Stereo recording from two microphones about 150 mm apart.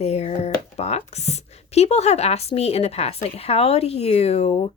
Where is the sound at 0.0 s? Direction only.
45° left (ahead or behind).